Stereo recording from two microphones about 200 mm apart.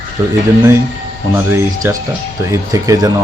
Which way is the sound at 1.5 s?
15° right (ahead or behind).